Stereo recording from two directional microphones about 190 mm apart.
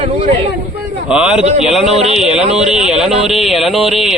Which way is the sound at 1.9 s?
35° right (ahead or behind).